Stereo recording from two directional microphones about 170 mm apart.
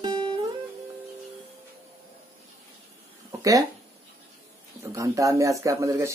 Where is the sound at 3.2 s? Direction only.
20° right (ahead or behind).